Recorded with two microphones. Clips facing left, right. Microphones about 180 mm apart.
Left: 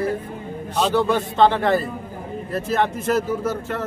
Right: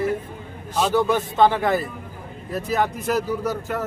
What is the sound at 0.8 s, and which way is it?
Speech, centre (ahead or behind).